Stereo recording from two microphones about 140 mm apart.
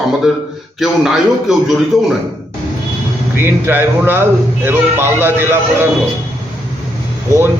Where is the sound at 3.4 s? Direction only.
15° right (ahead or behind).